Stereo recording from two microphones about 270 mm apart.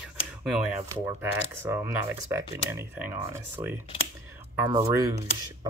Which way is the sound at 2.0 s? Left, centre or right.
Right.